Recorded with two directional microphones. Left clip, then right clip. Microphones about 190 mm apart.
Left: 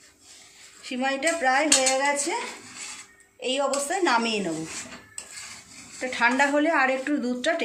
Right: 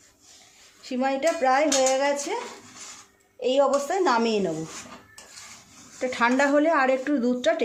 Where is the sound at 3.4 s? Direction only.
50° right (ahead or behind).